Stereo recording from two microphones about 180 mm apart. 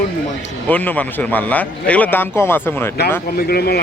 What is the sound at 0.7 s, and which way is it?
Speech, 10° left (ahead or behind).